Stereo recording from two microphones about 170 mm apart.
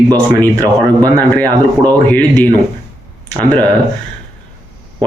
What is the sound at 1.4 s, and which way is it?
Speech, 25° right (ahead or behind).